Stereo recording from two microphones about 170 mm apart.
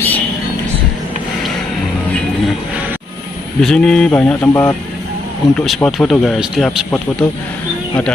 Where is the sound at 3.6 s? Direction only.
5° left (ahead or behind).